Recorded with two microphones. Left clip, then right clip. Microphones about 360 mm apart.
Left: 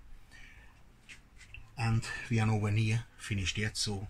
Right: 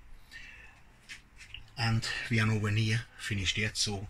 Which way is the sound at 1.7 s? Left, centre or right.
Centre.